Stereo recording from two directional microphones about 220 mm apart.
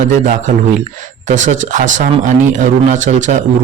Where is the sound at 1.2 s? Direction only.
35° right (ahead or behind).